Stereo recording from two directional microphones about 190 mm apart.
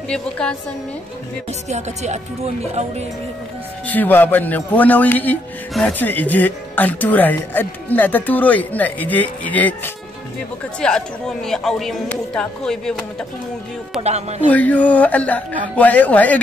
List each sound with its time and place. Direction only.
0.1 s speech: 5° left (ahead or behind)
1.7 s speech: 35° right (ahead or behind)
3.8 s speech: 10° left (ahead or behind)
10.8 s speech: 5° left (ahead or behind)
14.5 s speech: 10° left (ahead or behind)